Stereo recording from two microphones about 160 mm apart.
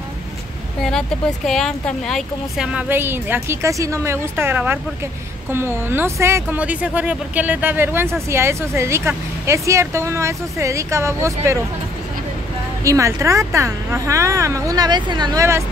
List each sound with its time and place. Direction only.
0.8 s speech: centre (ahead or behind); by 11.5 s 20° right (ahead or behind)
12.8 s speech: 20° right (ahead or behind)